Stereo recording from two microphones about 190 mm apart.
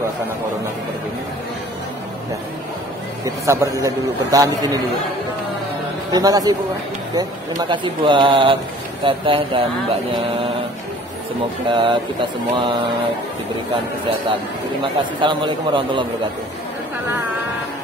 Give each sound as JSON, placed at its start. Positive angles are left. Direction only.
{"t": 3.3, "sound": "a man's voice", "side_deg": -15}
{"t": 6.1, "sound": "speech", "side_deg": -20}
{"t": 11.6, "sound": "speech", "side_deg": -25}
{"t": 14.8, "sound": "speech", "side_deg": -25}